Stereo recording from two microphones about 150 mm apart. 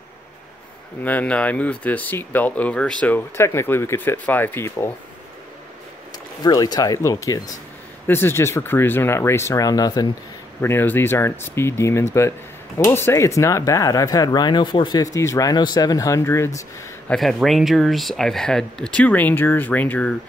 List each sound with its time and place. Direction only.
1.0 s speech: 10° left (ahead or behind)
6.4 s speech: 25° left (ahead or behind)
10.6 s speech: 15° left (ahead or behind)
17.1 s speech: centre (ahead or behind)